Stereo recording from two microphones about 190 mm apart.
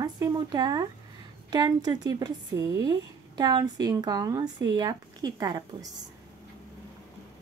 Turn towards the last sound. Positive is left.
turn(degrees=-20)  # may be behind; listen again after turning